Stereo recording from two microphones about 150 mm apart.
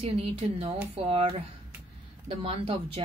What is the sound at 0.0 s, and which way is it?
Speech, 40° right (ahead or behind).